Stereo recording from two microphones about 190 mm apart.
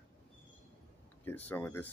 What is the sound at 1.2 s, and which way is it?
Speech, 10° left (ahead or behind).